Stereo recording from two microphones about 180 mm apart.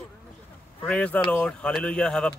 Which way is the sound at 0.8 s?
5° left (ahead or behind).